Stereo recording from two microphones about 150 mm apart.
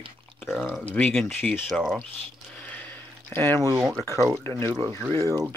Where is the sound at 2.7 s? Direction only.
10° left (ahead or behind).